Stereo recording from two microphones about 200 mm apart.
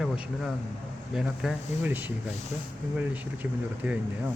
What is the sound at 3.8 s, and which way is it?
Speech, 5° right (ahead or behind).